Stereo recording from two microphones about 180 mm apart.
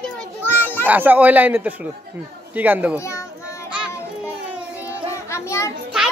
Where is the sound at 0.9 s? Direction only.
10° right (ahead or behind).